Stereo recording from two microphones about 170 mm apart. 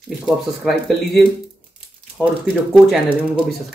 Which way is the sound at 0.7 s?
Centre (ahead or behind).